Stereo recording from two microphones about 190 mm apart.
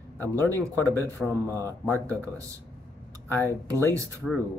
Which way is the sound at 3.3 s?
10° left (ahead or behind).